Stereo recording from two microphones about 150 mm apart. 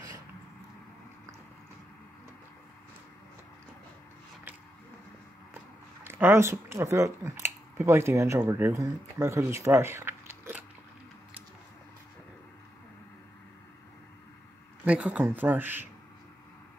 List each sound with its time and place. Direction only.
6.0 s speech: 15° right (ahead or behind)
14.9 s speech: 10° right (ahead or behind)